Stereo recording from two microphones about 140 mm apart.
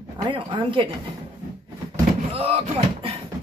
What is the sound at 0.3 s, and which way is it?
Speech, 35° right (ahead or behind).